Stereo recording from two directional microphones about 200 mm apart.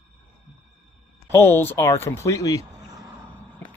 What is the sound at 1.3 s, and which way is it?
Speech, 10° left (ahead or behind).